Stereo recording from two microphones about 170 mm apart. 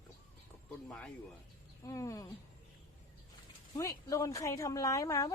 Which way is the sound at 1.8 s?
15° left (ahead or behind).